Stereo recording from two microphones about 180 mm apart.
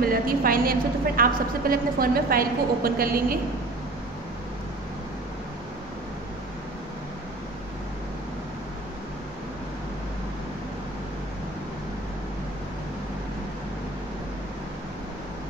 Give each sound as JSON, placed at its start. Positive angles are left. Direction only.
{"t": 0.0, "sound": "a woman's voice", "side_deg": -55}